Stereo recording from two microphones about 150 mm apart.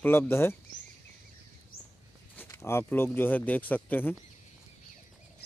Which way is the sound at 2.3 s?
20° left (ahead or behind).